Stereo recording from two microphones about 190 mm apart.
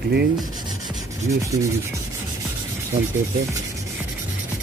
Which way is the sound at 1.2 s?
15° right (ahead or behind).